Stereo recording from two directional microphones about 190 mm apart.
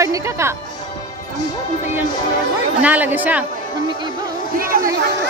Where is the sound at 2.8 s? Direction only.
10° right (ahead or behind).